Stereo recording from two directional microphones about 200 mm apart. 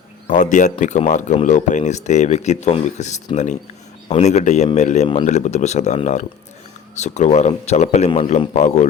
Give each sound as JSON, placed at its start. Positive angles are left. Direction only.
{"t": 0.3, "sound": "speech", "side_deg": 40}